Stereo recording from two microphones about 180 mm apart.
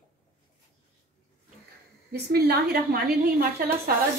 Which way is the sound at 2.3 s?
65° right (ahead or behind).